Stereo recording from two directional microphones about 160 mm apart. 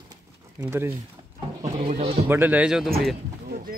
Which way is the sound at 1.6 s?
40° right (ahead or behind).